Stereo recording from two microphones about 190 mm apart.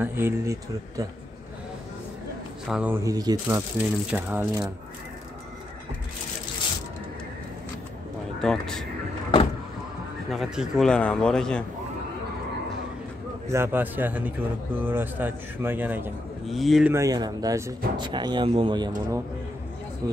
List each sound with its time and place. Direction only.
0.0 s a man's voice: 10° right (ahead or behind)
2.7 s a man's voice: 10° right (ahead or behind)
8.4 s a man's voice: 5° left (ahead or behind)
10.3 s a man's voice: centre (ahead or behind)
13.5 s a man's voice: 10° right (ahead or behind)
16.4 s a man's voice: centre (ahead or behind)
16.9 s speech: 20° right (ahead or behind)